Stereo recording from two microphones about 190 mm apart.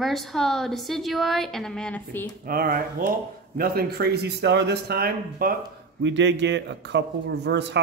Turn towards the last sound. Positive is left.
turn(degrees=-65)  # may be behind; listen again after turning